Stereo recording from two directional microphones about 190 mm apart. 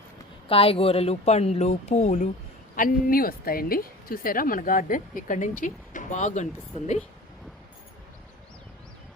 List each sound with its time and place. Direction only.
0.4 s a woman's voice: 30° left (ahead or behind)